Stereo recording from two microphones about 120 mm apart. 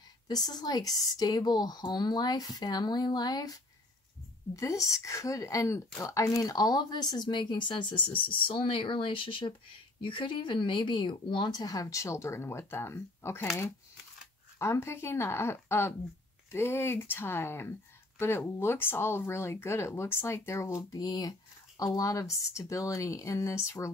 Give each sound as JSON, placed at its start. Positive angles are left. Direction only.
{"t": 0.3, "sound": "speech", "side_deg": 35}
{"t": 4.6, "sound": "speech", "side_deg": 25}
{"t": 14.6, "sound": "speech", "side_deg": 20}